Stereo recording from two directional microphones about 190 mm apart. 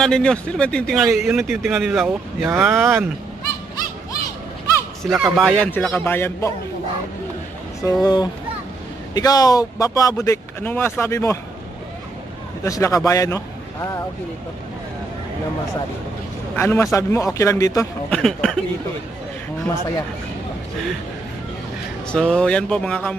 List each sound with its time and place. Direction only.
0.0 s a man's voice: 5° left (ahead or behind); by 3.1 s 10° right (ahead or behind)
5.0 s a man's voice: centre (ahead or behind)
7.8 s speech: 20° left (ahead or behind)
12.6 s a man's voice: 15° left (ahead or behind)
16.5 s speech: 15° left (ahead or behind)
18.1 s a man's voice: centre (ahead or behind)
22.1 s a man's voice: 5° left (ahead or behind)